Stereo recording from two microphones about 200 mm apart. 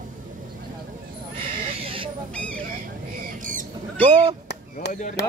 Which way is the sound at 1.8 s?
25° right (ahead or behind).